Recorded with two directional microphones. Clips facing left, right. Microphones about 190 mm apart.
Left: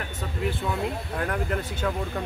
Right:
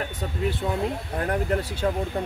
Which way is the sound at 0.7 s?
35° right (ahead or behind).